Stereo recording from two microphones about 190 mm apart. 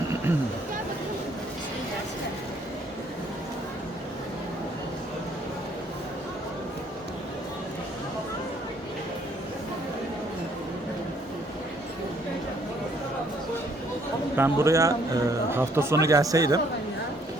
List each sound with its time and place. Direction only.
14.3 s a man's voice: 15° right (ahead or behind)